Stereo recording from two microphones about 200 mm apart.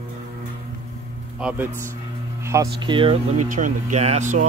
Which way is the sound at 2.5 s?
20° right (ahead or behind).